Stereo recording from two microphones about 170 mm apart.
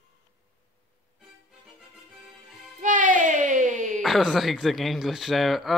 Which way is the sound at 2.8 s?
50° right (ahead or behind).